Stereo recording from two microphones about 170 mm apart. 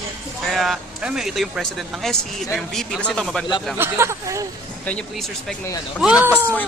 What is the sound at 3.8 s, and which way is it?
Speech, 15° right (ahead or behind).